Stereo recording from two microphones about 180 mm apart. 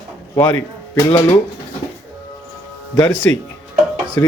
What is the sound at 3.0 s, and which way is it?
Speech, 10° left (ahead or behind).